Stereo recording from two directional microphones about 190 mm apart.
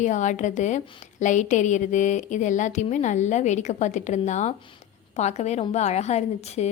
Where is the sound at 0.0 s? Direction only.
40° left (ahead or behind).